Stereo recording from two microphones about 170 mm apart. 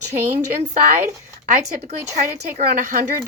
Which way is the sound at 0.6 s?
55° right (ahead or behind).